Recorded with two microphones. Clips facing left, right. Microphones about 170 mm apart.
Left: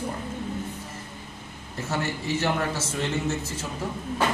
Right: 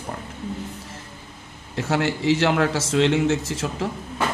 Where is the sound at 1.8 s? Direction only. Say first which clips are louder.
Right 7 dB; 90° right.